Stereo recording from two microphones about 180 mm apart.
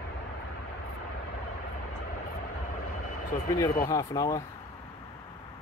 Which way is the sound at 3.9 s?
20° left (ahead or behind).